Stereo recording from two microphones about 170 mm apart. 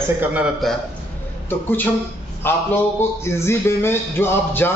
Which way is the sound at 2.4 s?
10° left (ahead or behind).